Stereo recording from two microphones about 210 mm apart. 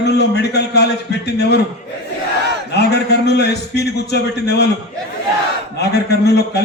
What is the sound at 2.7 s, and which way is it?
A man's voice, 50° left (ahead or behind).